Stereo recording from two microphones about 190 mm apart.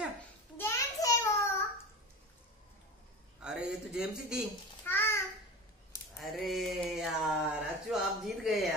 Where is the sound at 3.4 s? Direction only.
5° right (ahead or behind).